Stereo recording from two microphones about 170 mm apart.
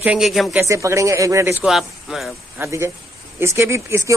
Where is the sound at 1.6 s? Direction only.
Centre (ahead or behind).